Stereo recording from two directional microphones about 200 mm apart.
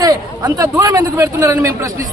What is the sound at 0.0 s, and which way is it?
A man's voice, 20° right (ahead or behind).